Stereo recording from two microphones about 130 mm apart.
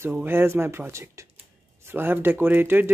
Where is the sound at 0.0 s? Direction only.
15° right (ahead or behind).